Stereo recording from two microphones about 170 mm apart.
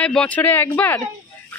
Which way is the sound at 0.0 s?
5° left (ahead or behind).